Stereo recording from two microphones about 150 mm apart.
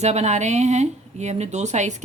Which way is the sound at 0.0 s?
45° right (ahead or behind).